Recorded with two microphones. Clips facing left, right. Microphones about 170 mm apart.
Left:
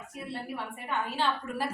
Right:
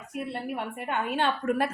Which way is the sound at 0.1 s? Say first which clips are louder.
Right 6 dB; 60° right (ahead or behind).